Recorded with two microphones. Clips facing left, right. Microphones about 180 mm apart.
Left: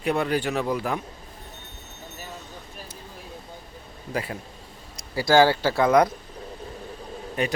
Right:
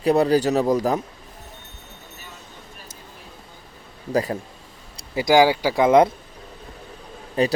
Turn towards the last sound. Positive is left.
turn(degrees=-35)  # may be behind; listen again after turning